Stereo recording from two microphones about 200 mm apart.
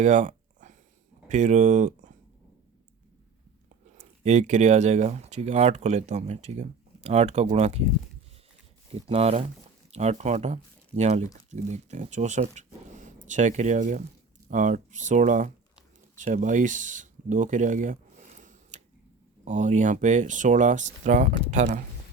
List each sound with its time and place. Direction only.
0.0 s a sound: 40° right (ahead or behind)
1.3 s speech: 35° right (ahead or behind)
3.9 s speech: 35° right (ahead or behind)
8.9 s speech: 30° right (ahead or behind)